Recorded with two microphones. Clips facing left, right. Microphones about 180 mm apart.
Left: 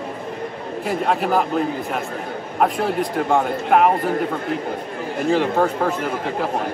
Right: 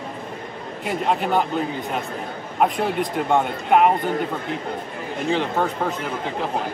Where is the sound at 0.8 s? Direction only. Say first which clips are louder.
Left 2 dB; centre (ahead or behind).